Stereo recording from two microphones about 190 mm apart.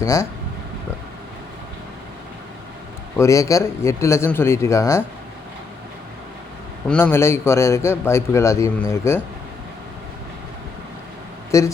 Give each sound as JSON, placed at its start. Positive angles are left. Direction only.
{"t": 0.0, "sound": "a man's voice", "side_deg": 15}
{"t": 3.2, "sound": "a man's voice", "side_deg": 15}
{"t": 6.8, "sound": "a man's voice", "side_deg": 10}
{"t": 11.5, "sound": "a man's voice", "side_deg": 15}